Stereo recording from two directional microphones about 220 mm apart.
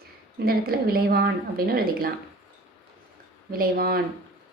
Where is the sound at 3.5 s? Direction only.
40° right (ahead or behind).